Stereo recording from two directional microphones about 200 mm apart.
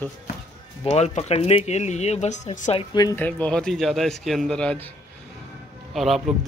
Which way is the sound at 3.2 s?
5° left (ahead or behind).